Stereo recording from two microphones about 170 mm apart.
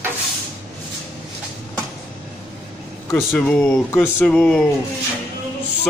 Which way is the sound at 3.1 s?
15° left (ahead or behind).